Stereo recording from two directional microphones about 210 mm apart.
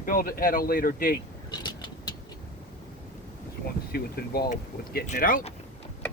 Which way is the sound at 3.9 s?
50° left (ahead or behind).